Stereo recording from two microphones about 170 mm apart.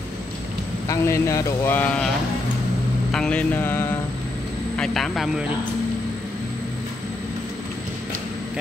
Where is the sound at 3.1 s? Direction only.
5° left (ahead or behind).